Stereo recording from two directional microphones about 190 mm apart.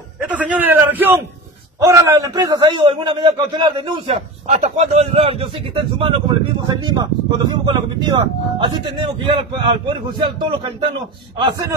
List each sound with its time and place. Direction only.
0.3 s a man's voice: 10° right (ahead or behind); by 11.6 s 25° right (ahead or behind)